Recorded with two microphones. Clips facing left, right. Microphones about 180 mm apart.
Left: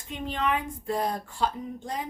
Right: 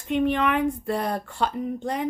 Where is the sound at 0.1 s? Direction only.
65° right (ahead or behind).